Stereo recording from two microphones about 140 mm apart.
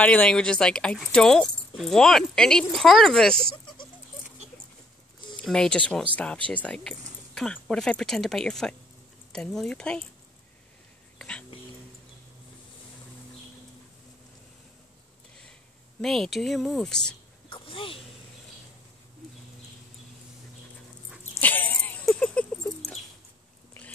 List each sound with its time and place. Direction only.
0.0 s speech: 10° left (ahead or behind)
5.4 s speech: 5° left (ahead or behind)
11.1 s whispering: 5° left (ahead or behind)
16.0 s speech: centre (ahead or behind)
17.5 s a sound: 40° left (ahead or behind)
21.2 s dog: 15° left (ahead or behind)